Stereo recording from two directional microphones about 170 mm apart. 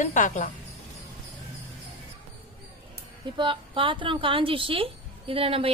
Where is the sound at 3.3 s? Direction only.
30° right (ahead or behind).